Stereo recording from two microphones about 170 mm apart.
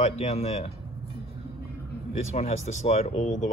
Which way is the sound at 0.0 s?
40° left (ahead or behind).